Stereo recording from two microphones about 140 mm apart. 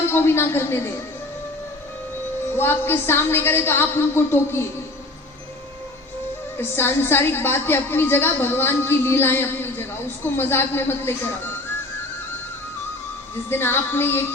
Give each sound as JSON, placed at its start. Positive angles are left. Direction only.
{"t": 0.1, "sound": "a woman's voice", "side_deg": 15}
{"t": 2.6, "sound": "a woman's voice", "side_deg": 15}
{"t": 6.6, "sound": "a woman's voice", "side_deg": 15}
{"t": 13.5, "sound": "a woman's voice", "side_deg": 15}